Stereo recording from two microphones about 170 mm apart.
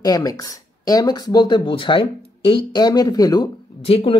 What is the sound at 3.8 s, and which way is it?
Speech, 35° left (ahead or behind).